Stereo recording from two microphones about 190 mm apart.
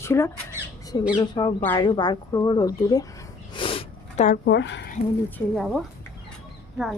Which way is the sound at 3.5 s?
30° left (ahead or behind).